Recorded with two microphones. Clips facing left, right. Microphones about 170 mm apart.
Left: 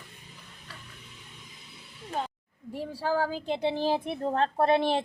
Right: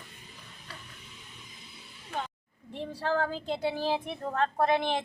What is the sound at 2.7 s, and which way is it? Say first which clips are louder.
Speech: left 1 dB; 5° left (ahead or behind).